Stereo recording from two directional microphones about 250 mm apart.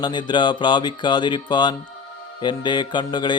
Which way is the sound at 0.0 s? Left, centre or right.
Centre.